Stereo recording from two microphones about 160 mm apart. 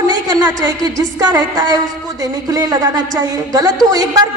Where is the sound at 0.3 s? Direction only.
20° right (ahead or behind).